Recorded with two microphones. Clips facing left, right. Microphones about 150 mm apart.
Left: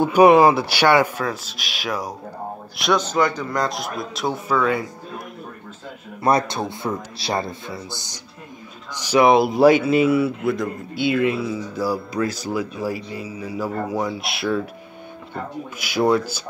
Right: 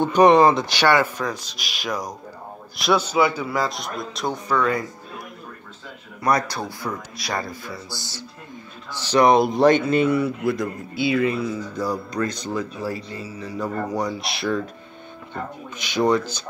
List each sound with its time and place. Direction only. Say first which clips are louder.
0.0 s speech: left 2 dB; 10° left (ahead or behind)
2.8 s speech: even; 5° right (ahead or behind)
6.2 s a man's voice: left 3 dB; 25° left (ahead or behind); by 16.4 s 10° left (ahead or behind)